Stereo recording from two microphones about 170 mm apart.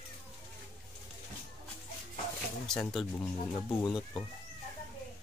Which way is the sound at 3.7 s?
20° left (ahead or behind).